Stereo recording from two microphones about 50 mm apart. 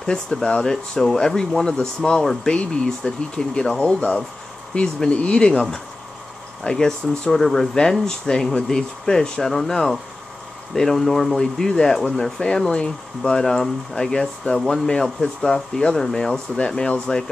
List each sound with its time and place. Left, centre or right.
0.0 s speech: centre
11.3 s speech: centre